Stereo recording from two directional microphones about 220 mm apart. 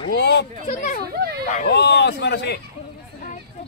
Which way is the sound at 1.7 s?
50° left (ahead or behind).